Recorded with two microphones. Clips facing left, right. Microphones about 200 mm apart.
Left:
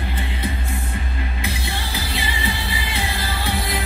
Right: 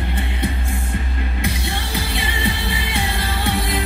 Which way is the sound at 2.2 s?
65° right (ahead or behind).